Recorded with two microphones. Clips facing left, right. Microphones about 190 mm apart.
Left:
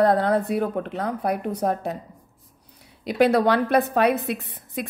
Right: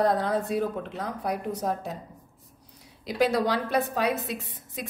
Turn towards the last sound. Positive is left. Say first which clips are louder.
# left 6 dB
turn(degrees=60)  # may be behind; listen again after turning